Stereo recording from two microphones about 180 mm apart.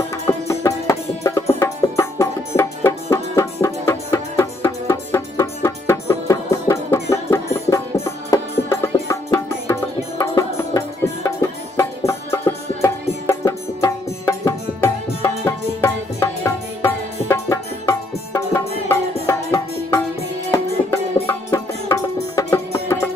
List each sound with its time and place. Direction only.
0.3 s music: 15° left (ahead or behind)
11.8 s music: 15° left (ahead or behind)